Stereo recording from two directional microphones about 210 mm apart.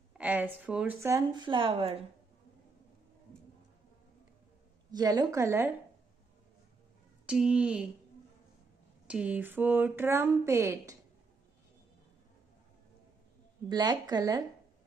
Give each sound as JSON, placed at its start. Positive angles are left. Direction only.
{"t": 0.2, "sound": "a woman's voice", "side_deg": -5}
{"t": 4.9, "sound": "a woman's voice", "side_deg": -20}
{"t": 7.2, "sound": "speech", "side_deg": -5}
{"t": 9.0, "sound": "a woman's voice", "side_deg": -5}
{"t": 13.7, "sound": "speech", "side_deg": -20}